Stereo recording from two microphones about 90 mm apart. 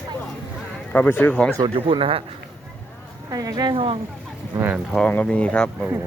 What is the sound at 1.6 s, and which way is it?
Speech, 80° right.